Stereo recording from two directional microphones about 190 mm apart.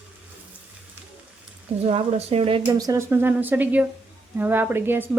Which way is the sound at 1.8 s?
35° right (ahead or behind).